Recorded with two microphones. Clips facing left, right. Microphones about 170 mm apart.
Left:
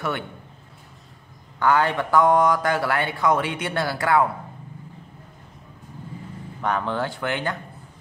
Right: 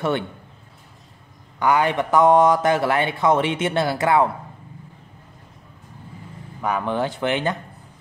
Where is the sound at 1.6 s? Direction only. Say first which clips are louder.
Right 1 dB; 15° right (ahead or behind).